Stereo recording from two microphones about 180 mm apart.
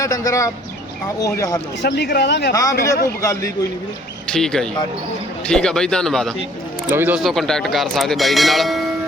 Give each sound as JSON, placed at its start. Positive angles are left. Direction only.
{"t": 0.0, "sound": "speech", "side_deg": 20}
{"t": 1.8, "sound": "speech", "side_deg": 70}
{"t": 2.5, "sound": "a man's voice", "side_deg": 20}
{"t": 4.3, "sound": "speech", "side_deg": 5}
{"t": 6.9, "sound": "speech", "side_deg": -10}
{"t": 7.2, "sound": "speech", "side_deg": 0}